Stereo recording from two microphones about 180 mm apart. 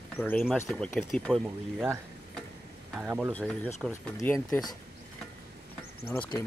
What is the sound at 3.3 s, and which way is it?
Speech, 10° left (ahead or behind).